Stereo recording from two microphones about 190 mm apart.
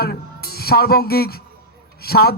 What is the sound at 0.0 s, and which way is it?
A man's voice, 55° left (ahead or behind).